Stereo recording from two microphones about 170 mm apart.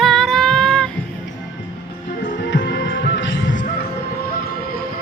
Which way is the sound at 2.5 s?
90° left.